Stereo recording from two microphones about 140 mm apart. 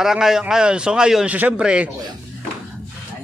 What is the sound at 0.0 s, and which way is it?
A man's voice, 5° right (ahead or behind).